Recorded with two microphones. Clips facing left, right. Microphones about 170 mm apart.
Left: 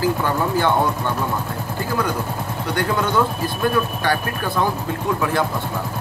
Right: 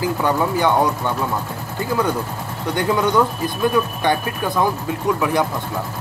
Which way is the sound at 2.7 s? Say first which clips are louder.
Right 3 dB; 20° right (ahead or behind).